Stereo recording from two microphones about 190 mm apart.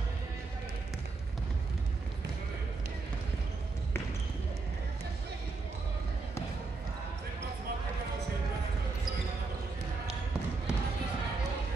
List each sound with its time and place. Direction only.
10.7 s basketball bounce: 5° right (ahead or behind)